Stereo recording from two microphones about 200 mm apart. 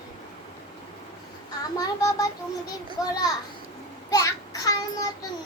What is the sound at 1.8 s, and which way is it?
A child's voice, 15° left (ahead or behind).